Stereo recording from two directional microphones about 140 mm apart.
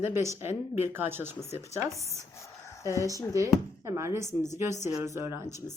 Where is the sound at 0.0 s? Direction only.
20° right (ahead or behind).